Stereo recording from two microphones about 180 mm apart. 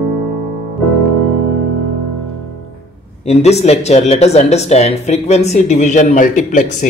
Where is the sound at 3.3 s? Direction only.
35° left (ahead or behind).